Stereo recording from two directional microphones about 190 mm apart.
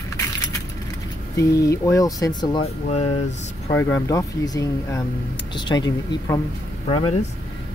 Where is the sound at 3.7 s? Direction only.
10° left (ahead or behind).